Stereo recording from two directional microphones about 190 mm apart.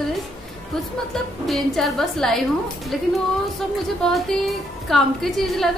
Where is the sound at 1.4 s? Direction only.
Centre (ahead or behind).